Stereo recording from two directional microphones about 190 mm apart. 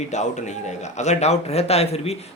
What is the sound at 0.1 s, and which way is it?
A man's voice, 40° left (ahead or behind).